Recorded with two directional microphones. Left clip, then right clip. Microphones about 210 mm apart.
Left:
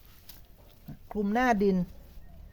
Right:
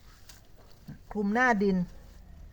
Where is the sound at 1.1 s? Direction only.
45° left (ahead or behind).